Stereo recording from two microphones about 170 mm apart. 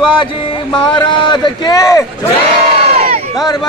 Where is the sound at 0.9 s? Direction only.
25° left (ahead or behind).